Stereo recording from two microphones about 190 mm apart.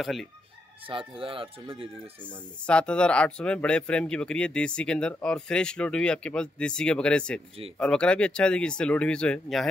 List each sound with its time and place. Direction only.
0.0 s speech: centre (ahead or behind)
0.8 s speech: 25° right (ahead or behind)
2.2 s speech: 5° left (ahead or behind)